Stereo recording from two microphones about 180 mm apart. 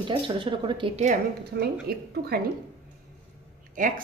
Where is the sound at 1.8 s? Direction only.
60° right (ahead or behind).